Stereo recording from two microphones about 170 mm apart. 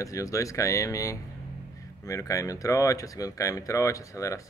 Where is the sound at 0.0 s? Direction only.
20° left (ahead or behind).